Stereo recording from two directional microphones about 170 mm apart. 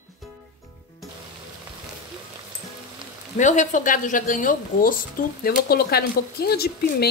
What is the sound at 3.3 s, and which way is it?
Speech, 45° left (ahead or behind).